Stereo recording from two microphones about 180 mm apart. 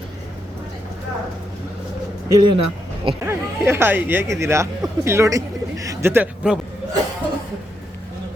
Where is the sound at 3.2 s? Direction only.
15° right (ahead or behind).